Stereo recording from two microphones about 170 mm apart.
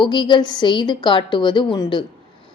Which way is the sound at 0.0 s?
25° left (ahead or behind).